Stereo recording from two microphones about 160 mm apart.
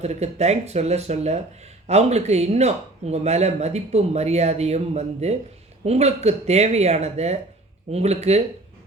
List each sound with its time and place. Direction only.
0.0 s speech: 45° right (ahead or behind)